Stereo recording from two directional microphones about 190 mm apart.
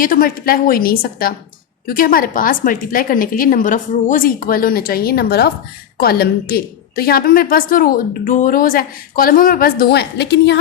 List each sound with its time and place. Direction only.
0.0 s a woman's voice: 50° left (ahead or behind); by 10.6 s 65° left (ahead or behind)